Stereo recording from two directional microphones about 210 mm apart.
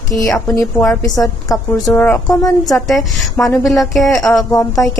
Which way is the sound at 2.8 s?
Centre (ahead or behind).